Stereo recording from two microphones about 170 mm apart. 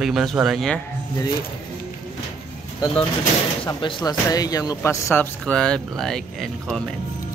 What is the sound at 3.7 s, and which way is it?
Speech, 25° left (ahead or behind).